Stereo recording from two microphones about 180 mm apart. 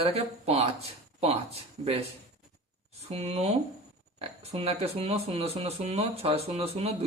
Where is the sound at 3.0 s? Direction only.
35° right (ahead or behind).